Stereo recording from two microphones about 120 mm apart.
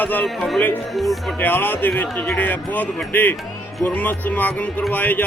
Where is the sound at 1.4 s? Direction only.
15° left (ahead or behind).